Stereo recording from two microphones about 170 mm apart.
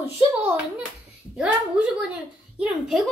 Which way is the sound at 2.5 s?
5° right (ahead or behind).